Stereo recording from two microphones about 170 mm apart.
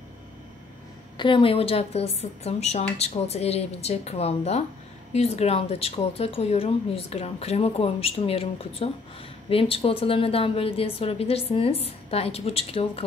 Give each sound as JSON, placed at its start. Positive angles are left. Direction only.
{"t": 1.1, "sound": "speech", "side_deg": 30}